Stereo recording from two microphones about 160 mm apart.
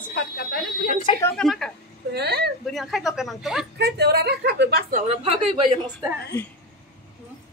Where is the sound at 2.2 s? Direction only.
90° right.